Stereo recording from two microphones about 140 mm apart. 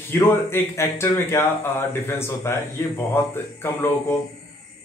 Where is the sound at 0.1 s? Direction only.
15° left (ahead or behind).